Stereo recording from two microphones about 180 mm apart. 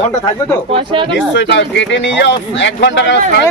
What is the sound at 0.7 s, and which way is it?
Speech, 30° right (ahead or behind).